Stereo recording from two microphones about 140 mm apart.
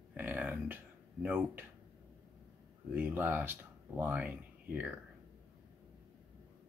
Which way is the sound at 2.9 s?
15° right (ahead or behind).